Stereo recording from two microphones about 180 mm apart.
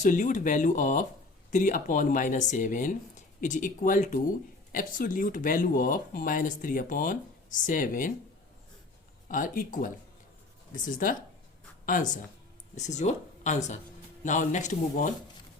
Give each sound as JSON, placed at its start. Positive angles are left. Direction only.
{"t": 0.0, "sound": "speech", "side_deg": 45}
{"t": 9.3, "sound": "speech", "side_deg": 50}